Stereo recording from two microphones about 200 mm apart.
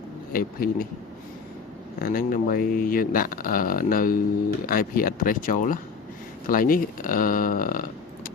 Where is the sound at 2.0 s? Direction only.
45° left (ahead or behind).